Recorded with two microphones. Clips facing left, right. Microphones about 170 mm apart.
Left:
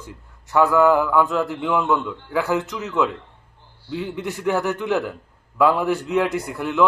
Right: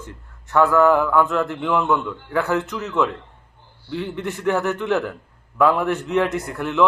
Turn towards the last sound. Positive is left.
turn(degrees=0)  # may be behind; listen again after turning